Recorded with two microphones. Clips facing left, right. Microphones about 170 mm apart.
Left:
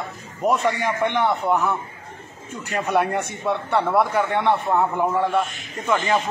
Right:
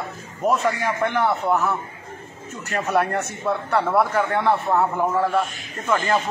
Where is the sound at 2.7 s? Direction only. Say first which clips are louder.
Even; 5° left (ahead or behind).